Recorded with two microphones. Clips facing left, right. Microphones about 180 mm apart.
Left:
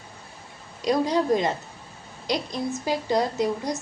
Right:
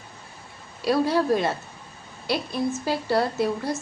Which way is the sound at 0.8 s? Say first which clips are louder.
Right 1 dB; 15° left (ahead or behind).